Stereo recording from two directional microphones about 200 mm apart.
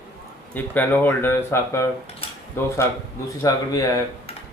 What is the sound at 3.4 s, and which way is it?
Speech, 15° left (ahead or behind).